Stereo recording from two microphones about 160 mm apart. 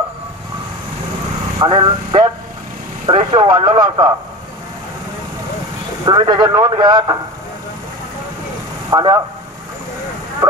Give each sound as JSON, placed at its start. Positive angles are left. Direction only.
{"t": 1.6, "sound": "speech", "side_deg": -30}
{"t": 6.0, "sound": "a man's voice", "side_deg": -25}
{"t": 8.9, "sound": "a man's voice", "side_deg": -25}